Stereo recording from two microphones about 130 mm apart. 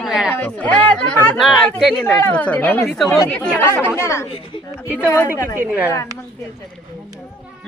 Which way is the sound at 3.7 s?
20° left (ahead or behind).